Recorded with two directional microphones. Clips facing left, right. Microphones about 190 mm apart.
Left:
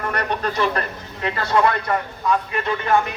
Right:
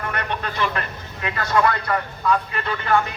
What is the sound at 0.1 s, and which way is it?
Speech, 40° left (ahead or behind).